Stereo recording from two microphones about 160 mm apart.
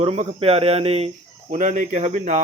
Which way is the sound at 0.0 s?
35° right (ahead or behind).